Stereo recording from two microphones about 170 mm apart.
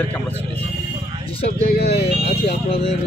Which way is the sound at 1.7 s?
65° left (ahead or behind).